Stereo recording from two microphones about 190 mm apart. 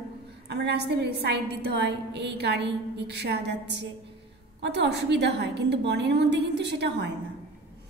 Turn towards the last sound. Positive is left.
turn(degrees=-65)  # may be behind; listen again after turning